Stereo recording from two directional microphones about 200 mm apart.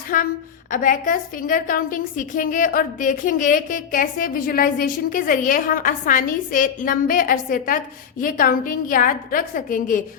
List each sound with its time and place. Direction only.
0.1 s a woman's voice: 45° left (ahead or behind)